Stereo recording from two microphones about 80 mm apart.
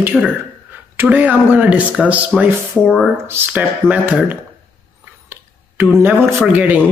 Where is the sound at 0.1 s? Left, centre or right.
Centre.